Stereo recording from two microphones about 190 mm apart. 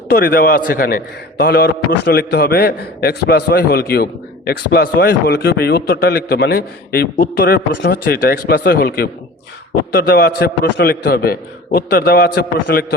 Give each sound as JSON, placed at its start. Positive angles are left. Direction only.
{"t": 0.1, "sound": "a man's voice", "side_deg": 50}